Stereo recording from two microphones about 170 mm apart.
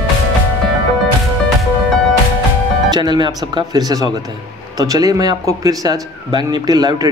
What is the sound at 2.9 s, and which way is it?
Speech, 25° right (ahead or behind).